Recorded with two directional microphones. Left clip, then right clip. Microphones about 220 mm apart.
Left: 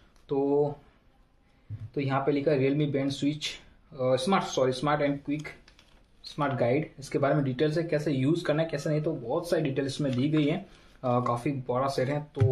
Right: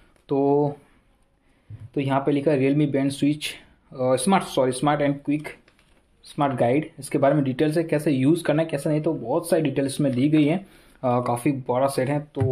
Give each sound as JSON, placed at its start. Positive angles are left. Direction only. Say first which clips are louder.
{"t": 0.3, "sound": "speech", "louder": "right 5 dB", "side_deg": -40}
{"t": 2.0, "sound": "speech", "louder": "right 5 dB", "side_deg": -40}